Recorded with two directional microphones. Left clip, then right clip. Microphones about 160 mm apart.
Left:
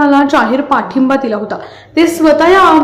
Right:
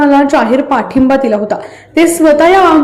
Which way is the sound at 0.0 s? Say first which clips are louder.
Right 1 dB; 10° right (ahead or behind).